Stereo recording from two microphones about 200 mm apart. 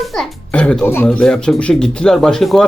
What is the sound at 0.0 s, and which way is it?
A child's voice, centre (ahead or behind).